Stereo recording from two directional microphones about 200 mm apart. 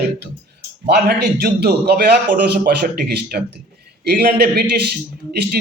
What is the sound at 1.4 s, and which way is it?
A man's voice, 50° right (ahead or behind).